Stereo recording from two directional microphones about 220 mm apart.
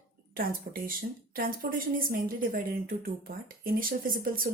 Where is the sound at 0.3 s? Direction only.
40° right (ahead or behind).